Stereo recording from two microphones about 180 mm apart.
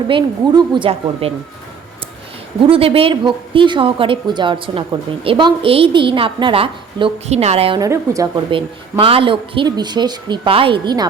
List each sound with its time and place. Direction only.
0.1 s speech: 25° right (ahead or behind)
2.6 s speech: 30° right (ahead or behind)
7.8 s speech: 20° right (ahead or behind)
8.4 s speech: 30° right (ahead or behind)